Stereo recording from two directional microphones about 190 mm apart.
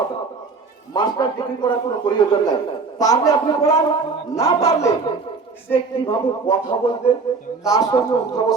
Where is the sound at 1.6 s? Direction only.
20° left (ahead or behind).